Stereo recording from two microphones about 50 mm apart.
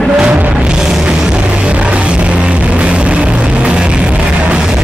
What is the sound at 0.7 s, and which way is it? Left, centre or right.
Music, centre.